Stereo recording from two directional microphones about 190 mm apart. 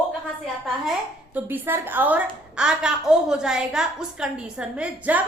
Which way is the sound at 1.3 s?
10° right (ahead or behind).